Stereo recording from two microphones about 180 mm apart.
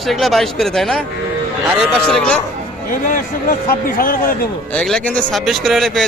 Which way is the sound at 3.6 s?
50° left (ahead or behind).